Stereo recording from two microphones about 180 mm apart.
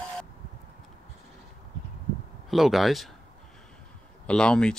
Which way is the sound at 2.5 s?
Centre (ahead or behind).